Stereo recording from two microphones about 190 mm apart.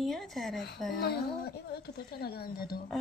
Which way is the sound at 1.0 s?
55° left (ahead or behind).